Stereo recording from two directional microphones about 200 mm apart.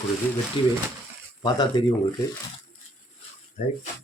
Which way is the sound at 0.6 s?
25° left (ahead or behind).